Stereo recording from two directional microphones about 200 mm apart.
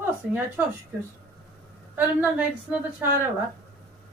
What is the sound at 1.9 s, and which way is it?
A man's voice, 10° right (ahead or behind).